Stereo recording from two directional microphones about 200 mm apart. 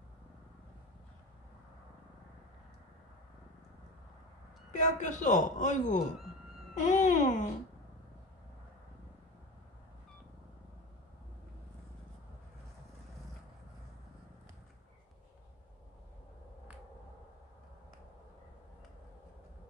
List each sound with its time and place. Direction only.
4.7 s a man's voice: 35° left (ahead or behind)